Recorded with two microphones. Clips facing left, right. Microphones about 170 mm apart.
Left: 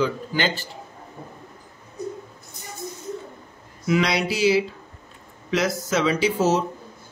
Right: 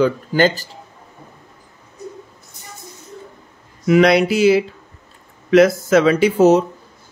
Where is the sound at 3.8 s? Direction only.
55° right (ahead or behind).